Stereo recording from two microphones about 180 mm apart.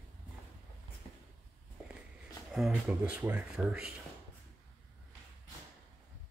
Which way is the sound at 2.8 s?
10° right (ahead or behind).